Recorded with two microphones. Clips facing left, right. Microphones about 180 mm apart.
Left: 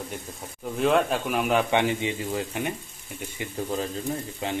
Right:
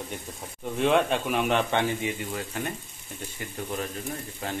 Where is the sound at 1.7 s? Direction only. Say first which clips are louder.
Left 3 dB; 20° left (ahead or behind).